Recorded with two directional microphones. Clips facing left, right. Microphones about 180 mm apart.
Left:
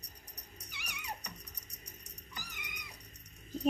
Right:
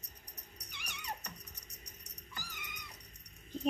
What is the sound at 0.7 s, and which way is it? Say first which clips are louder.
Cat: even; 10° left (ahead or behind).